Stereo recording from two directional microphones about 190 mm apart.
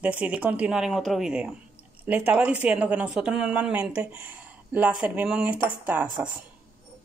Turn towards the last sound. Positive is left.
turn(degrees=-10)  # may be behind; listen again after turning